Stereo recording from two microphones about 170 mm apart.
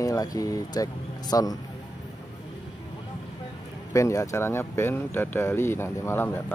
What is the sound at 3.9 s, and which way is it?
Speech, 15° left (ahead or behind).